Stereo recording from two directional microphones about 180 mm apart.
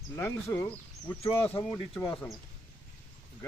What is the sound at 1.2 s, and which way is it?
Speech, 30° left (ahead or behind).